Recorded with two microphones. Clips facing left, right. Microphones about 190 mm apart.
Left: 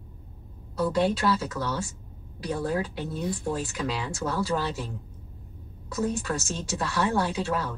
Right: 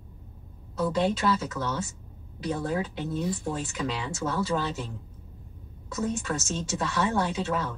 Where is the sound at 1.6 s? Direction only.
Centre (ahead or behind).